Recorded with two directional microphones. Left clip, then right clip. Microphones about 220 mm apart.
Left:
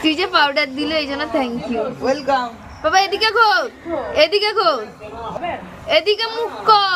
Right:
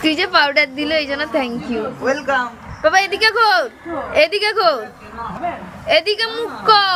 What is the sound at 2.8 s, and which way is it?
A woman's voice, 5° right (ahead or behind).